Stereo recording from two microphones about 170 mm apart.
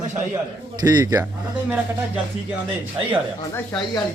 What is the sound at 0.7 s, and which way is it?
Speech, 20° right (ahead or behind).